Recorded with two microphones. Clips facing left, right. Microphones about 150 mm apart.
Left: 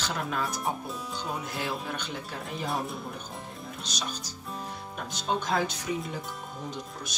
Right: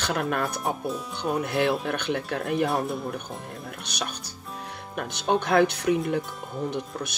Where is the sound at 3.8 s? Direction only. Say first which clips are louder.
Right 1 dB; 65° right (ahead or behind).